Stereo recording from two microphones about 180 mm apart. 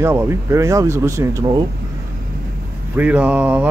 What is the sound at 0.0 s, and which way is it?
Speech, 15° right (ahead or behind).